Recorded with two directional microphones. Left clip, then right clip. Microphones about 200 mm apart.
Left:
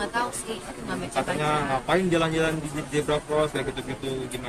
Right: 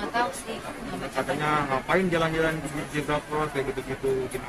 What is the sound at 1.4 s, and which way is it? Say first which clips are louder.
A man's voice: right 1 dB; 50° left (ahead or behind).